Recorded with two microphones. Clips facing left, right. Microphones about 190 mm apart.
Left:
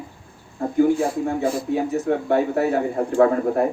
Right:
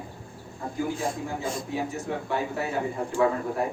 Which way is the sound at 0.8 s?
60° left (ahead or behind).